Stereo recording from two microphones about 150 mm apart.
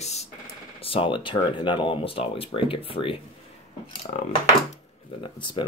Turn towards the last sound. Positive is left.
turn(degrees=30)  # may be behind; listen again after turning